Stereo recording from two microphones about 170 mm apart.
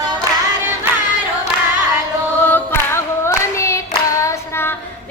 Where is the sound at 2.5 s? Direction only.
15° left (ahead or behind).